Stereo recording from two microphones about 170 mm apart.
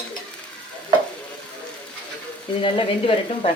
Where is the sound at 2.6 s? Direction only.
30° left (ahead or behind).